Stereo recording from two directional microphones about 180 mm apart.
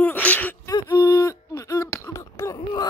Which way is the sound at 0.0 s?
10° left (ahead or behind).